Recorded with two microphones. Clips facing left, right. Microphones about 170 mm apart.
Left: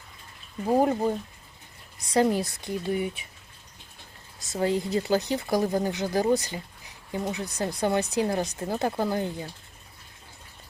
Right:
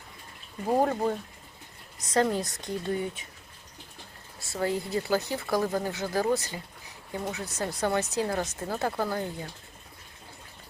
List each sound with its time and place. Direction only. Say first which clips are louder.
0.7 s speech: left 2 dB; 15° left (ahead or behind)
4.5 s speech: left 3 dB; 20° left (ahead or behind)